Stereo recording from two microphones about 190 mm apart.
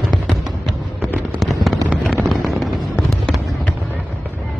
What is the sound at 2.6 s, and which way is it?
Fireworks, centre (ahead or behind).